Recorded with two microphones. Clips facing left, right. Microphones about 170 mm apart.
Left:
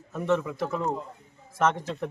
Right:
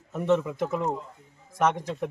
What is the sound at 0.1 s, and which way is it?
A man's voice, 20° right (ahead or behind).